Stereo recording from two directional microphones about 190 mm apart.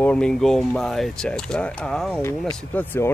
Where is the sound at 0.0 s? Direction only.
5° left (ahead or behind).